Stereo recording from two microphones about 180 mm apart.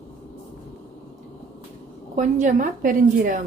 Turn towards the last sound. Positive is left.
turn(degrees=-50)  # may be behind; listen again after turning